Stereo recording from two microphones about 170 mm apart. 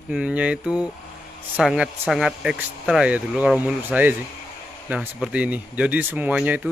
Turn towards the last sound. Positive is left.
turn(degrees=-10)  # may be behind; listen again after turning